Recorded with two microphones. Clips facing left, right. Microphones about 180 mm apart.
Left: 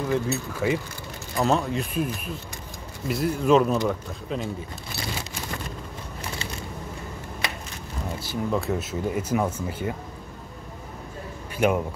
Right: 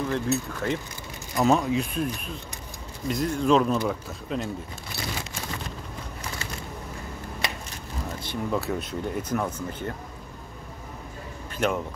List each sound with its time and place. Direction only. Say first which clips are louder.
0.1 s speech: left 1 dB; 5° left (ahead or behind)
8.2 s speech: left 2 dB; 5° left (ahead or behind)
11.5 s speech: left 4 dB; 10° left (ahead or behind)